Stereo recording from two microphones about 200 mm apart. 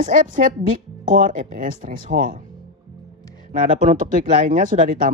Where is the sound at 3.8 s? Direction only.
40° right (ahead or behind).